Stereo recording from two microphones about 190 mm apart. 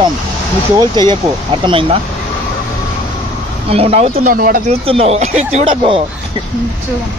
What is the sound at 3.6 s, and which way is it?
Speech, 30° right (ahead or behind).